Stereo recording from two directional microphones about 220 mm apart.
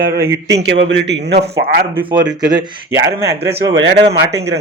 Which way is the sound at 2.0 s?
20° right (ahead or behind).